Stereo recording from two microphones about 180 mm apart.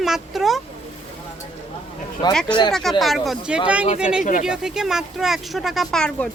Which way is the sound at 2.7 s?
Centre (ahead or behind).